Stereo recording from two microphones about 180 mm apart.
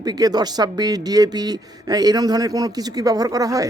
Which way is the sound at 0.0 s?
20° right (ahead or behind).